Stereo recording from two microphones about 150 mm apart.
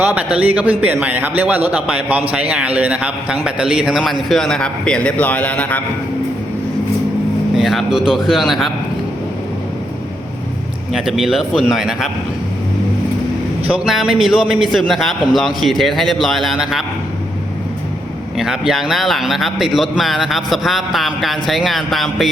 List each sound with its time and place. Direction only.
0.0 s a man's voice: 10° right (ahead or behind); by 5.8 s 10° left (ahead or behind)
7.5 s a man's voice: centre (ahead or behind)
10.9 s a man's voice: centre (ahead or behind)
13.7 s a man's voice: 5° right (ahead or behind)
18.3 s a man's voice: 5° right (ahead or behind)